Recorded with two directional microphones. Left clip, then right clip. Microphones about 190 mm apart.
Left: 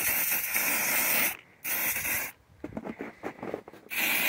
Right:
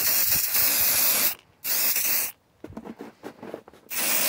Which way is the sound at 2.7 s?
30° left (ahead or behind).